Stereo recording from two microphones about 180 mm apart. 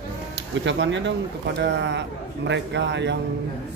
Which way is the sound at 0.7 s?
90° right.